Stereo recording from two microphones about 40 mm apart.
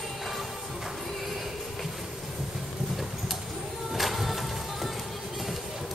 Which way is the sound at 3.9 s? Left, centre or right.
Centre.